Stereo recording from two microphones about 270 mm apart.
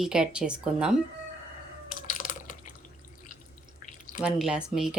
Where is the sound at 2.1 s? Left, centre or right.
Left.